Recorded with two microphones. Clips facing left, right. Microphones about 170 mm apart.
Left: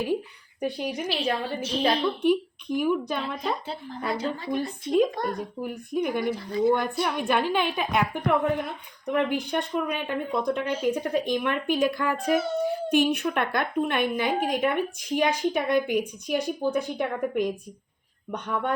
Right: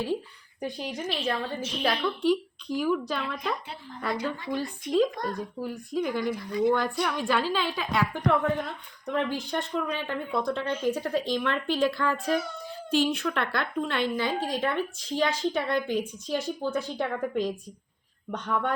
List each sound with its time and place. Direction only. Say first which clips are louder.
0.8 s a child's voice: left 4 dB; 10° left (ahead or behind)
1.6 s a woman's voice: left 5 dB; 30° left (ahead or behind)
2.2 s a woman's voice: left 2 dB; 20° left (ahead or behind)